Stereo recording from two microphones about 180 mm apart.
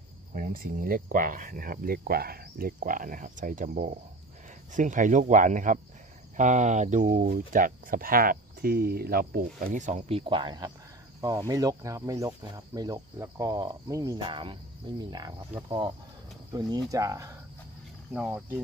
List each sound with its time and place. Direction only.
0.3 s speech: 50° right (ahead or behind); by 15.3 s 25° right (ahead or behind)
16.5 s speech: 20° right (ahead or behind)
18.1 s speech: 10° right (ahead or behind)